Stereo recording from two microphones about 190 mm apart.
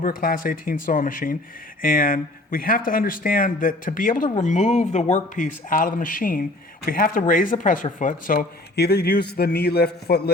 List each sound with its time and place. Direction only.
0.0 s speech: 45° left (ahead or behind)